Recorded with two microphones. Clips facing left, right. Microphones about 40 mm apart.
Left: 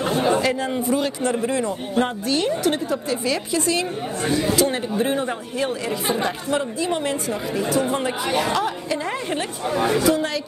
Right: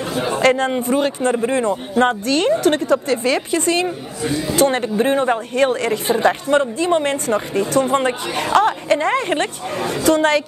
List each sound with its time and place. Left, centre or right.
0.4 s a man's voice: right
2.2 s a woman's voice: right